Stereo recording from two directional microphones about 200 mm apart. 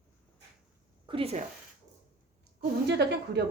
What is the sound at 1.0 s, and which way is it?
Speech, 30° right (ahead or behind).